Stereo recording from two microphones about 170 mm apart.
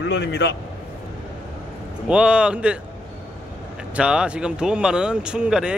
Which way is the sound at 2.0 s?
5° right (ahead or behind).